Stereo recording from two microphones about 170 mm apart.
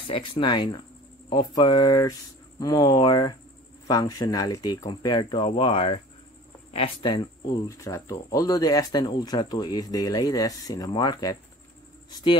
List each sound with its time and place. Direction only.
0.1 s speech: 30° left (ahead or behind)